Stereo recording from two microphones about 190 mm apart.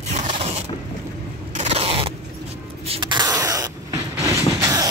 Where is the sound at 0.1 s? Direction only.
30° right (ahead or behind).